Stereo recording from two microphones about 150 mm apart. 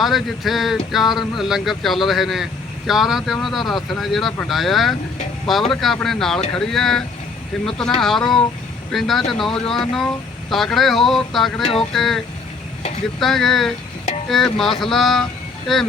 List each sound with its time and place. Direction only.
0.0 s speech: centre (ahead or behind)